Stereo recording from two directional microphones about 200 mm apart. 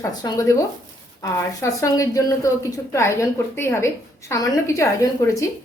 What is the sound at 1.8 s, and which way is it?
A woman's voice, 15° left (ahead or behind).